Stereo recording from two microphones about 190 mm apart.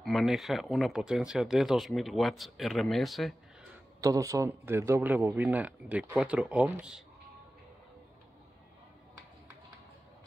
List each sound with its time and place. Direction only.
0.0 s speech: centre (ahead or behind)
4.0 s a man's voice: 15° right (ahead or behind)